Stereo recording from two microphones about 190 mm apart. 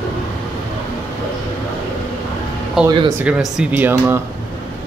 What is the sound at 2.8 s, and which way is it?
Speech, 25° right (ahead or behind).